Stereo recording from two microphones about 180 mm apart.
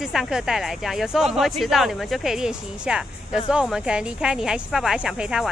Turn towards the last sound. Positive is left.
turn(degrees=-5)  # may be behind; listen again after turning